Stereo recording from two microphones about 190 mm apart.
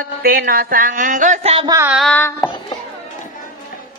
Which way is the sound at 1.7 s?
10° right (ahead or behind).